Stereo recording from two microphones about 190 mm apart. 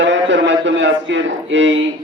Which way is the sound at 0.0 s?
70° right (ahead or behind).